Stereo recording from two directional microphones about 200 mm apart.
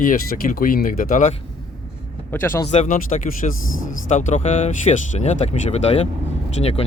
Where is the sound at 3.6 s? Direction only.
85° left.